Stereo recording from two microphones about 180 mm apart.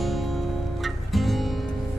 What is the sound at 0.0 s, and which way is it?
Music, centre (ahead or behind).